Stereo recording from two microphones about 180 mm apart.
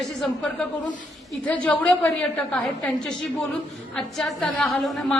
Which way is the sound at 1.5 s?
5° left (ahead or behind).